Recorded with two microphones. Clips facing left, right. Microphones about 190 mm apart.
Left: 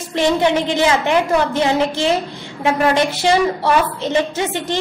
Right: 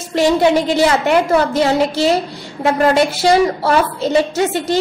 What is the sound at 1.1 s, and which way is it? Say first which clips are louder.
A woman's voice: right 2 dB; 40° right (ahead or behind).